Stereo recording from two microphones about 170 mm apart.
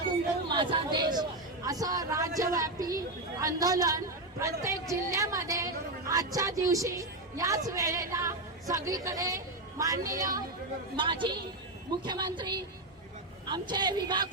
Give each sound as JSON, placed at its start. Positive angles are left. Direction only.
{"t": 0.4, "sound": "chatter", "side_deg": -30}
{"t": 3.4, "sound": "a woman's voice", "side_deg": -20}